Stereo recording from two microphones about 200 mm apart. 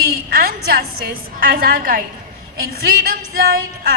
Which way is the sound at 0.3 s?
45° right (ahead or behind).